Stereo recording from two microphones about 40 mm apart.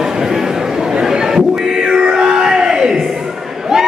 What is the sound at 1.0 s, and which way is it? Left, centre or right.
Music, centre.